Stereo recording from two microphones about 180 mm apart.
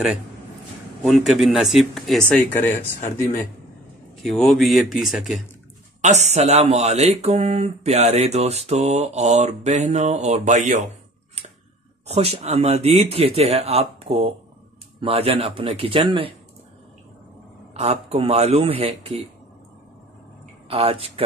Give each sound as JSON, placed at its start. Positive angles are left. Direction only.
{"t": 1.0, "sound": "speech", "side_deg": 0}
{"t": 5.9, "sound": "speech", "side_deg": -40}
{"t": 12.1, "sound": "speech", "side_deg": -35}
{"t": 17.7, "sound": "speech", "side_deg": -35}
{"t": 20.6, "sound": "speech", "side_deg": -30}